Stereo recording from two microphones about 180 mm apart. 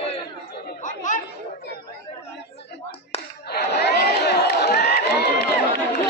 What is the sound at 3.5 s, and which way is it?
Crowd, 65° left (ahead or behind).